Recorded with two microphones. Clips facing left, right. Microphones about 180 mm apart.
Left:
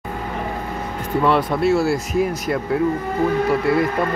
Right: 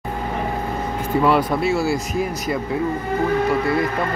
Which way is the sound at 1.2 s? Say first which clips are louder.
Left 1 dB; centre (ahead or behind).